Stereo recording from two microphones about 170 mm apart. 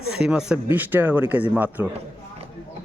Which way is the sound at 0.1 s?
5° right (ahead or behind).